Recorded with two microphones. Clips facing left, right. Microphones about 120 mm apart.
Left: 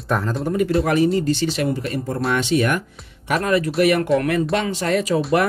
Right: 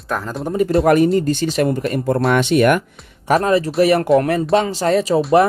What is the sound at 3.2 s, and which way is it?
Speech, 30° right (ahead or behind).